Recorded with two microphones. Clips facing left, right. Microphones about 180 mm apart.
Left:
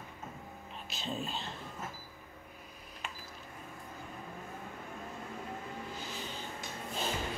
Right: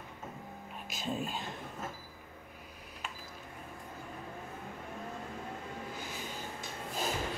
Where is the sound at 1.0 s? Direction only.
10° right (ahead or behind).